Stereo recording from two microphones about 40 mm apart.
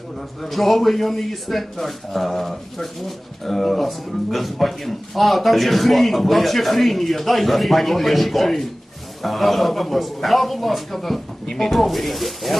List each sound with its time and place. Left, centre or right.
0.4 s speech: centre
11.4 s speech: centre
11.7 s speech: centre